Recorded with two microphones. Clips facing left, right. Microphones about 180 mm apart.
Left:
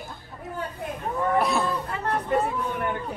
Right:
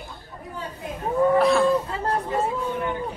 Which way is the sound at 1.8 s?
30° right (ahead or behind).